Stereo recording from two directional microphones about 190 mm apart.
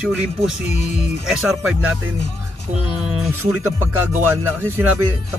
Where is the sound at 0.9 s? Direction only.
5° right (ahead or behind).